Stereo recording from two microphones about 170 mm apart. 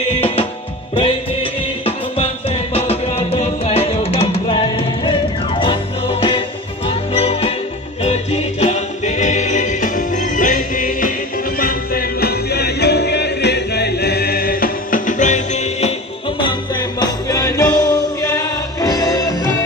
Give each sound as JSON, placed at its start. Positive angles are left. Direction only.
{"t": 0.9, "sound": "music", "side_deg": 35}
{"t": 6.9, "sound": "jingle bell", "side_deg": 35}
{"t": 8.0, "sound": "music", "side_deg": 40}
{"t": 16.3, "sound": "music", "side_deg": 25}